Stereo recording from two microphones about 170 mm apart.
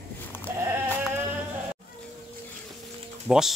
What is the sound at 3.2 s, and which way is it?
Speech, 5° right (ahead or behind).